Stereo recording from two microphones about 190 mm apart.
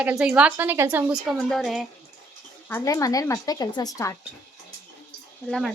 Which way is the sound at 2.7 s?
15° left (ahead or behind).